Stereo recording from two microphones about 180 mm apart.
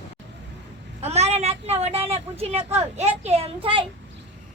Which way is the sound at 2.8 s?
35° right (ahead or behind).